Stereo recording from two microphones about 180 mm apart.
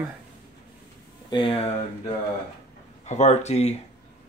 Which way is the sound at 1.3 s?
30° left (ahead or behind).